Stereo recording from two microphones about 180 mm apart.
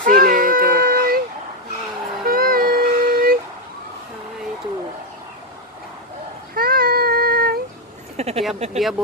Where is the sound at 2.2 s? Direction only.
55° right (ahead or behind).